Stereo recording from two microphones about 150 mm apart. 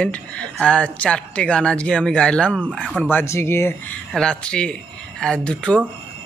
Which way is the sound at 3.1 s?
15° left (ahead or behind).